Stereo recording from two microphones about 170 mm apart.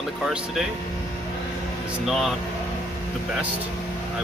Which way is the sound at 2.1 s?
Centre (ahead or behind).